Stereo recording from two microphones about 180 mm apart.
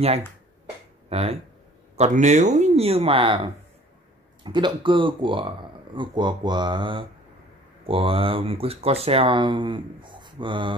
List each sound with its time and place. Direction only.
1.0 s speech: 35° right (ahead or behind)